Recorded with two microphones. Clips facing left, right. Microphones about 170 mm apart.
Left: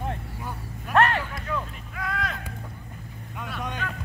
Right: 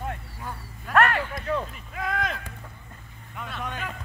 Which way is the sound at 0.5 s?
15° left (ahead or behind).